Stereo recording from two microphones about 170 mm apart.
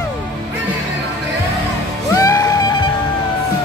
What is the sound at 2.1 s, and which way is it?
Music, 20° left (ahead or behind).